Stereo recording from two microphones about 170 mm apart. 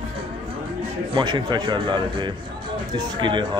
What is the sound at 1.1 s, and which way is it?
Speech, 25° right (ahead or behind).